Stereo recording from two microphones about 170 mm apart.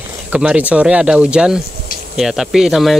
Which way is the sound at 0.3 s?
5° right (ahead or behind).